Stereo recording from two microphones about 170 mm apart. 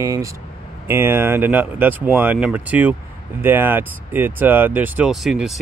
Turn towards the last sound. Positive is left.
turn(degrees=0)  # may be behind; listen again after turning